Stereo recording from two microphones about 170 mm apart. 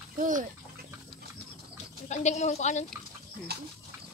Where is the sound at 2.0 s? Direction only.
45° left (ahead or behind).